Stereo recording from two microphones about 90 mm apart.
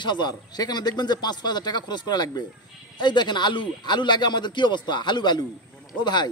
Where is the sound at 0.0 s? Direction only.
55° left (ahead or behind).